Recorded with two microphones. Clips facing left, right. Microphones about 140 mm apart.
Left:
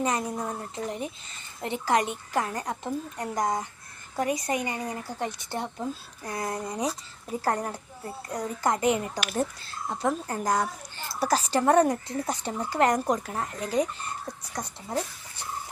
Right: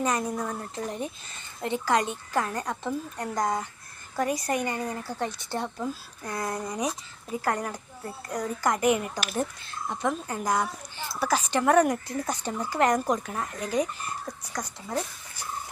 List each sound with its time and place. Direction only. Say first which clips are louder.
0.0 s speech: right 1 dB; 20° left (ahead or behind)